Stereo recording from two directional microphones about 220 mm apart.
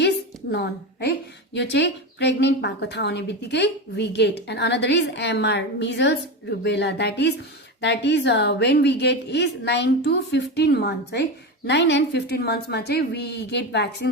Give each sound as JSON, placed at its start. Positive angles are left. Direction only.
{"t": 0.5, "sound": "a woman's voice", "side_deg": 50}